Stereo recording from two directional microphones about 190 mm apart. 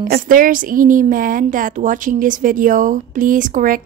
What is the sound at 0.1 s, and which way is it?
A woman's voice, 45° right (ahead or behind).